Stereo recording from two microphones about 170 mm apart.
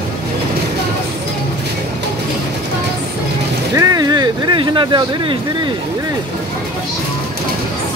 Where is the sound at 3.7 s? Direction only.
20° right (ahead or behind).